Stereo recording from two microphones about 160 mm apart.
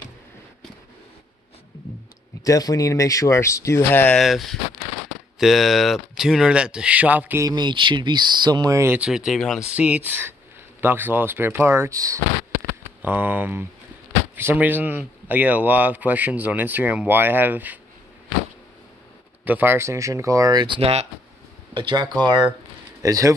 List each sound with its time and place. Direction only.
2.4 s speech: 20° left (ahead or behind)
4.2 s speech: centre (ahead or behind)
7.4 s speech: 30° right (ahead or behind); by 17.7 s 10° right (ahead or behind)
19.4 s speech: 10° right (ahead or behind); by 21.1 s 40° right (ahead or behind)
21.7 s speech: 30° right (ahead or behind)